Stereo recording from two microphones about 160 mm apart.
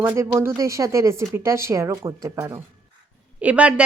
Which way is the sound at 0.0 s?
15° right (ahead or behind).